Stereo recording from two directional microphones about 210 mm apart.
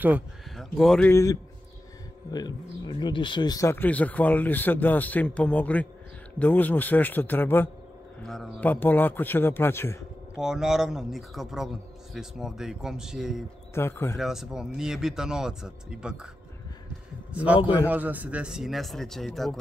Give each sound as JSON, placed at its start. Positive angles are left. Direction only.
{"t": 0.0, "sound": "speech", "side_deg": -5}
{"t": 10.4, "sound": "speech", "side_deg": -5}
{"t": 13.7, "sound": "speech", "side_deg": 10}
{"t": 14.1, "sound": "speech", "side_deg": 0}
{"t": 17.3, "sound": "a man's voice", "side_deg": -5}
{"t": 17.6, "sound": "a man's voice", "side_deg": 25}
{"t": 17.8, "sound": "speech", "side_deg": -10}